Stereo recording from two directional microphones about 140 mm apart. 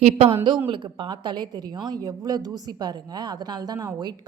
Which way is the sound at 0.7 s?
35° right (ahead or behind).